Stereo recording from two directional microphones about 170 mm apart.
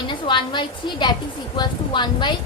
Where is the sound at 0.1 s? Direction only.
25° left (ahead or behind).